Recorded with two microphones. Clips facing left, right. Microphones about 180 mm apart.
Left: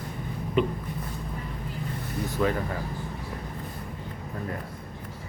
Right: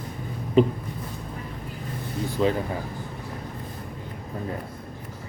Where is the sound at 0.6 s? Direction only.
35° right (ahead or behind).